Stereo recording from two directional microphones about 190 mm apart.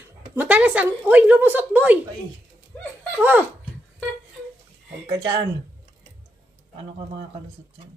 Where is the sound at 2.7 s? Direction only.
10° left (ahead or behind).